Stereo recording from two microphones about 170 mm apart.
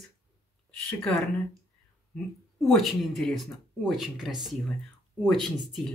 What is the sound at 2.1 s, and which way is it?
Speech, centre (ahead or behind).